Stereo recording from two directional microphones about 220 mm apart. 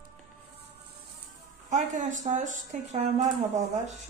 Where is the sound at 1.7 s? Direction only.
35° right (ahead or behind).